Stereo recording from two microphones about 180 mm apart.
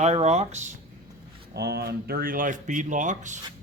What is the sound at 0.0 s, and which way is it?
Speech, 35° right (ahead or behind).